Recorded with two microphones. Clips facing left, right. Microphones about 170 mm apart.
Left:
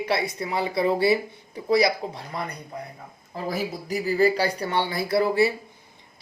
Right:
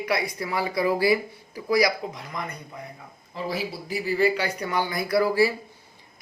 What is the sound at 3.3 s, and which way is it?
Speech, 45° left (ahead or behind).